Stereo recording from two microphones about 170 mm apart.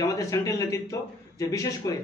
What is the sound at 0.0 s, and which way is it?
Speech, 20° left (ahead or behind).